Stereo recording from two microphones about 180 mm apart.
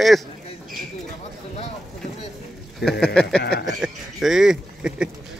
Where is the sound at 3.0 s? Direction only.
5° left (ahead or behind).